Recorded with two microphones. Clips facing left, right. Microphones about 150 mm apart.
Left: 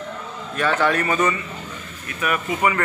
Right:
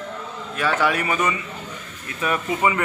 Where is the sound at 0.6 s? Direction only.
10° right (ahead or behind).